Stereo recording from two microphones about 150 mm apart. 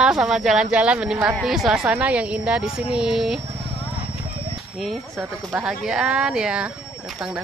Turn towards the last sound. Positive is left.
turn(degrees=-5)  # may be behind; listen again after turning